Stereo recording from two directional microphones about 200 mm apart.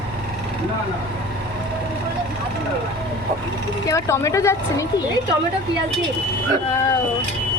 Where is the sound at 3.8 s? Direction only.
15° left (ahead or behind).